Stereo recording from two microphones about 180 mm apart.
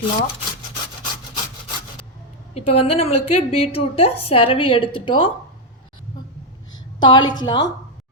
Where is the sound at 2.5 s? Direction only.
35° left (ahead or behind).